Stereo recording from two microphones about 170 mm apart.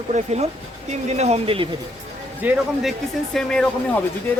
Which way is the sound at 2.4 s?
10° right (ahead or behind).